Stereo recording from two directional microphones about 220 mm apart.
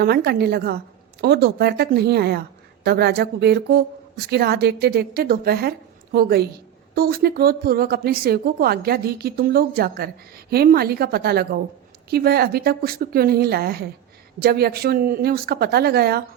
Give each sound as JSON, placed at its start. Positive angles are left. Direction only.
{"t": 0.0, "sound": "a woman's voice", "side_deg": -45}